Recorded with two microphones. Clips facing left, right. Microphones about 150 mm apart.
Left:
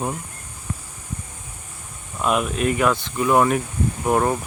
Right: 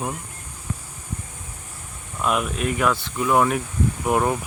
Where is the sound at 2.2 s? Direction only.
5° left (ahead or behind).